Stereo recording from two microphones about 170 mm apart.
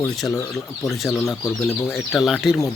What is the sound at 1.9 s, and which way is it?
Speech, centre (ahead or behind).